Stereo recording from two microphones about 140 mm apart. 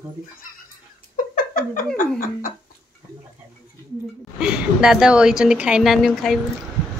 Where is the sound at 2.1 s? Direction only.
80° left.